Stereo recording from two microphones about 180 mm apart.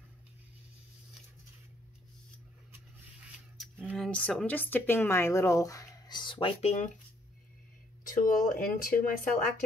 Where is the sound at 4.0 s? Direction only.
5° left (ahead or behind); by 6.9 s 40° left (ahead or behind).